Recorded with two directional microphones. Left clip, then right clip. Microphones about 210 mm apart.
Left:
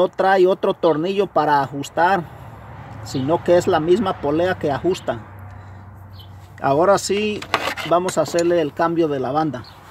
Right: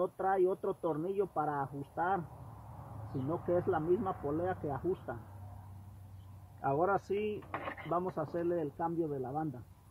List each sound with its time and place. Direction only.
0.0 s speech: 55° left (ahead or behind)
3.3 s speech: 45° left (ahead or behind)
6.6 s speech: 50° left (ahead or behind)